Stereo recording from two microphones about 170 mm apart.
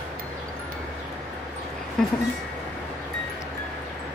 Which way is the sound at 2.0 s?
5° left (ahead or behind).